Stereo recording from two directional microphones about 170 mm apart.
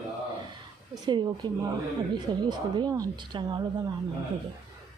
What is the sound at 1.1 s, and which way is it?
A woman's voice, 25° right (ahead or behind).